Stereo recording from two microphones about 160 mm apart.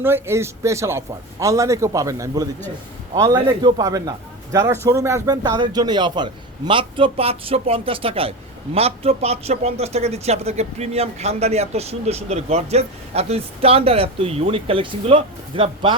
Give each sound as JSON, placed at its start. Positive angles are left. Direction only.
{"t": 0.0, "sound": "a man's voice", "side_deg": -15}